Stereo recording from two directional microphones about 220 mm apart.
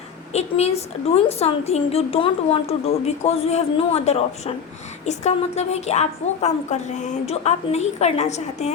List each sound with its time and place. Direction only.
0.3 s a woman's voice: 30° left (ahead or behind)